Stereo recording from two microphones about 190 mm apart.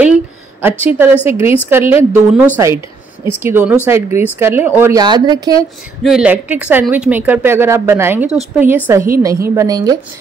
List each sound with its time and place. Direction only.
0.0 s a sound: 10° right (ahead or behind)
1.7 s a woman's voice: 10° right (ahead or behind)
6.0 s a woman's voice: 5° right (ahead or behind)